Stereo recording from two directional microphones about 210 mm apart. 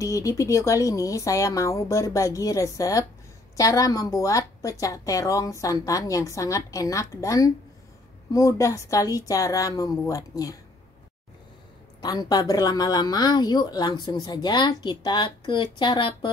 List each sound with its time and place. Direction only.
0.0 s a woman's voice: 15° left (ahead or behind)
12.0 s speech: 20° left (ahead or behind)